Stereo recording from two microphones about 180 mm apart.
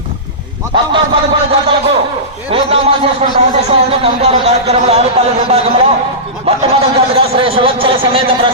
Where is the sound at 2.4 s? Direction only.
30° right (ahead or behind).